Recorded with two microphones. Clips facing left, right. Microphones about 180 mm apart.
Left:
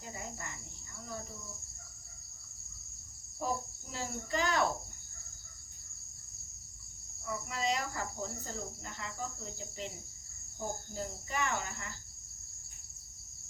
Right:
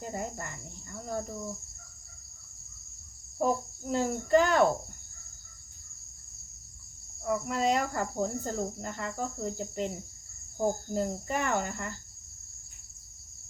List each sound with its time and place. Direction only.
0.0 s cricket: 55° right (ahead or behind)
3.3 s cricket: 55° right (ahead or behind)
7.3 s cricket: 55° right (ahead or behind)
10.9 s cricket: 55° right (ahead or behind)